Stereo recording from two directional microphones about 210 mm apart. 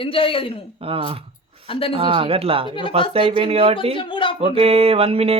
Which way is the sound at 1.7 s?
25° left (ahead or behind).